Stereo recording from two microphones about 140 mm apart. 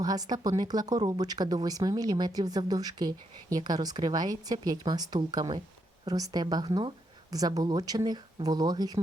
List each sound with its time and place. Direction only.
0.0 s speech: 25° right (ahead or behind)